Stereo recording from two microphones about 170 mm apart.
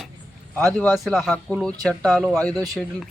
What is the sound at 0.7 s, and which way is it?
A man's voice, 10° left (ahead or behind).